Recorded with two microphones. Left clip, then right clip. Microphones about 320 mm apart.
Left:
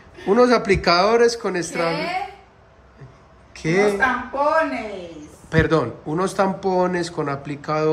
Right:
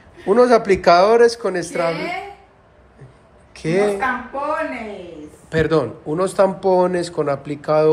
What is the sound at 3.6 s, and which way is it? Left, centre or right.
Speech, centre.